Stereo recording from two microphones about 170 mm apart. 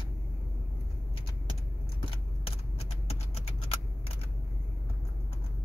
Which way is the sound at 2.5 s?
35° left (ahead or behind).